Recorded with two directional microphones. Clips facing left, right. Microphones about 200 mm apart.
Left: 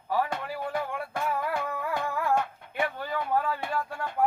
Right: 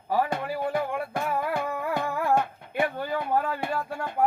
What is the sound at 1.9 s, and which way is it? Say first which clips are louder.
Music: right 2 dB; 30° right (ahead or behind).